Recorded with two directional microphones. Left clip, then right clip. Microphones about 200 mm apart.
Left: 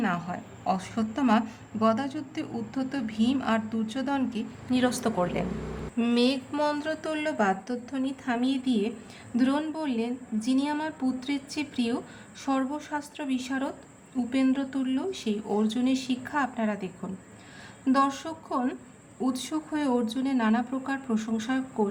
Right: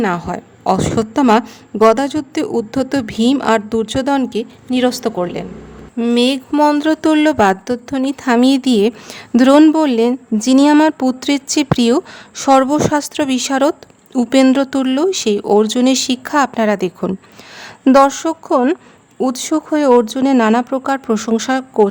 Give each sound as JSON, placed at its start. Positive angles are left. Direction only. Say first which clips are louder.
{"t": 0.0, "sound": "a woman's voice", "louder": "right 12 dB", "side_deg": -40}
{"t": 6.0, "sound": "a sound", "louder": "right 11 dB", "side_deg": -25}
{"t": 6.2, "sound": "a woman's voice", "louder": "right 13 dB", "side_deg": -35}